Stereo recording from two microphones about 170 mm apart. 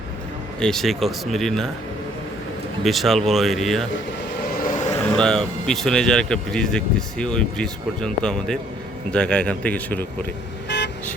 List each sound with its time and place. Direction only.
0.6 s speech: centre (ahead or behind)
2.8 s speech: centre (ahead or behind)
5.0 s speech: 5° left (ahead or behind)
10.7 s vehicle: 90° left